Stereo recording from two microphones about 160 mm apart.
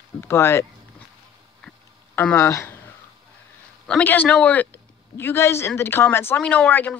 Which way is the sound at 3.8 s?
10° left (ahead or behind).